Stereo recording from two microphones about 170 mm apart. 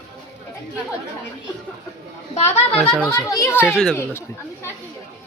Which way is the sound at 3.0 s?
5° left (ahead or behind).